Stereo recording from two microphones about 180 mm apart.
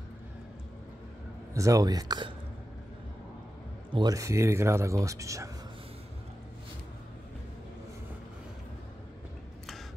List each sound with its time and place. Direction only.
1.5 s speech: 15° right (ahead or behind)
3.9 s speech: 20° right (ahead or behind)